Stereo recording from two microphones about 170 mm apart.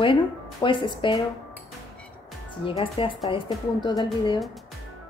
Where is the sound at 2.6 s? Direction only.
30° left (ahead or behind).